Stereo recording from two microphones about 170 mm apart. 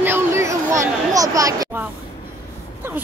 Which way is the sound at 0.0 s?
15° right (ahead or behind).